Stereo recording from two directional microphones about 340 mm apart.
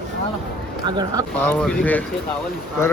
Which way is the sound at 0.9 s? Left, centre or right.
Centre.